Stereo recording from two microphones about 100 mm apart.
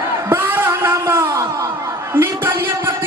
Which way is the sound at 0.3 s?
20° right (ahead or behind).